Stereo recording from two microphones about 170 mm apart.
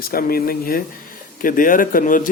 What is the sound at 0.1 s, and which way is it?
Speech, 60° left (ahead or behind).